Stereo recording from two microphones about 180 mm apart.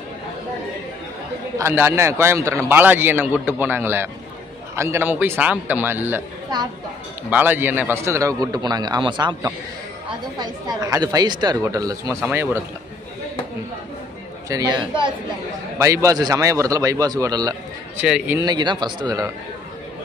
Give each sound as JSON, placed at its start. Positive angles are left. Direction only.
{"t": 1.6, "sound": "a man's voice", "side_deg": -15}
{"t": 7.2, "sound": "a man's voice", "side_deg": -10}
{"t": 14.5, "sound": "a woman's voice", "side_deg": -20}
{"t": 18.0, "sound": "a man's voice", "side_deg": -5}
{"t": 18.4, "sound": "a woman's voice", "side_deg": -25}